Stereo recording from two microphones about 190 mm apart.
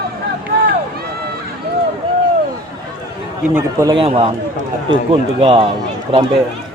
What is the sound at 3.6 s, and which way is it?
A man's voice, 15° right (ahead or behind).